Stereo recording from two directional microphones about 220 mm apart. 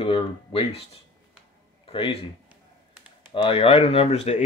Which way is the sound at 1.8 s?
25° left (ahead or behind).